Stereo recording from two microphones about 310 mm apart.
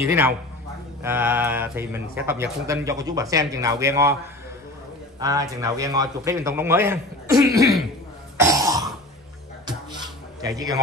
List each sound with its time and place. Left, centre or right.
1.0 s speech: centre
5.2 s speech: centre
8.4 s cough: centre
10.4 s speech: centre